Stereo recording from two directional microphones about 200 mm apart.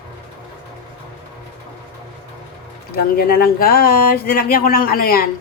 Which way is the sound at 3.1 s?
50° left (ahead or behind).